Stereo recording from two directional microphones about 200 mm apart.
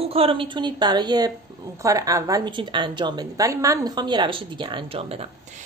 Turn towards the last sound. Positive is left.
turn(degrees=-30)  # may be behind; listen again after turning